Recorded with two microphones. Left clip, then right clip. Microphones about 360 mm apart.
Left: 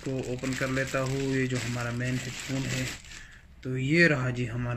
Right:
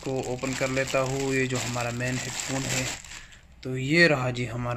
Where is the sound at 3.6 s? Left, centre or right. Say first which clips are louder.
Right 3 dB; centre.